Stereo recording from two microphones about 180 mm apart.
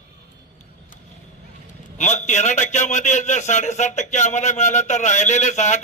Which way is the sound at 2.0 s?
40° left (ahead or behind).